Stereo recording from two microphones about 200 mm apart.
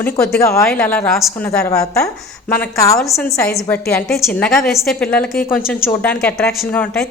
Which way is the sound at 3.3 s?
10° left (ahead or behind).